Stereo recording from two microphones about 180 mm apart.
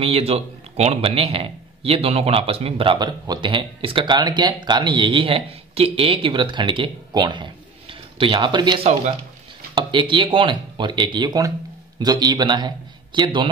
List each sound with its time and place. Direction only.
0.0 s a man's voice: 35° right (ahead or behind)